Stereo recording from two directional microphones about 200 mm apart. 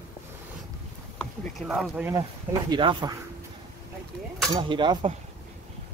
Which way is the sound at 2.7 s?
20° right (ahead or behind).